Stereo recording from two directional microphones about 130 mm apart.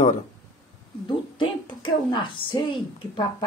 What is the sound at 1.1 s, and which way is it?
A woman's voice, 40° left (ahead or behind).